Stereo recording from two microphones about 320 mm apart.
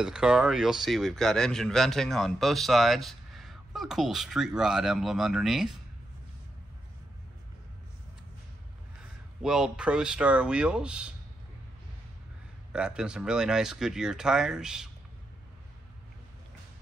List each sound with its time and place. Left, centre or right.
0.0 s a man's voice: centre
9.4 s a man's voice: centre
12.7 s a man's voice: centre